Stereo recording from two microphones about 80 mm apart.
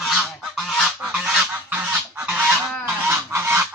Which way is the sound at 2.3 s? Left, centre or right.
Centre.